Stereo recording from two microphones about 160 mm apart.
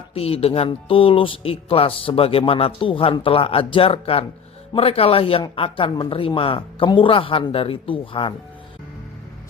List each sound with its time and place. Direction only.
0.1 s speech: 40° left (ahead or behind)